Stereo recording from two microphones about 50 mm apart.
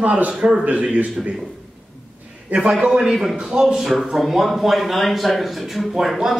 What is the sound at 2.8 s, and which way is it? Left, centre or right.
Speech, centre.